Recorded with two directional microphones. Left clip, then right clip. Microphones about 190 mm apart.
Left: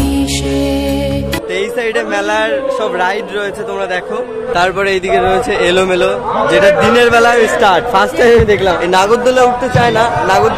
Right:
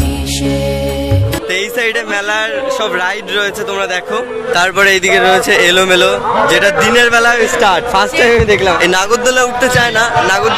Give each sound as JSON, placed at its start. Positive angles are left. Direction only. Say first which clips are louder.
{"t": 4.6, "sound": "a man's voice", "louder": "right 3 dB", "side_deg": 0}
{"t": 7.6, "sound": "speech", "louder": "left 1 dB", "side_deg": 10}
{"t": 8.8, "sound": "a man's voice", "louder": "left 1 dB", "side_deg": 0}